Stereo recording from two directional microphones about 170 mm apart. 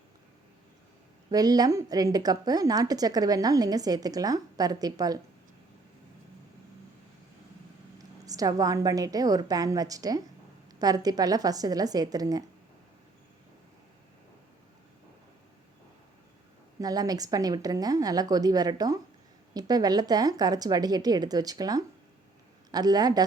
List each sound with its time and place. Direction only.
1.3 s a woman's voice: 20° right (ahead or behind)
7.9 s a woman's voice: 20° right (ahead or behind)
16.8 s a woman's voice: 20° right (ahead or behind)